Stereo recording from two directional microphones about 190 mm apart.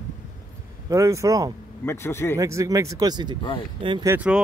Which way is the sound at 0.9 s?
15° right (ahead or behind).